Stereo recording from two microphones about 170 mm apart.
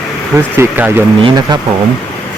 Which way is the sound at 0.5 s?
15° right (ahead or behind).